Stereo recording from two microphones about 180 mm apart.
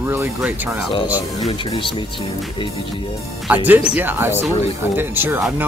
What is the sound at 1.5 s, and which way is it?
Speech, 30° left (ahead or behind).